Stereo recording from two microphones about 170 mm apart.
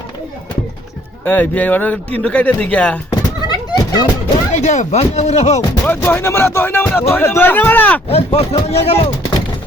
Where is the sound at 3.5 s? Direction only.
25° left (ahead or behind).